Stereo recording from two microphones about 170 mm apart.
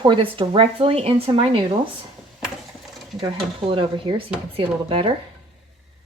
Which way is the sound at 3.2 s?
30° right (ahead or behind).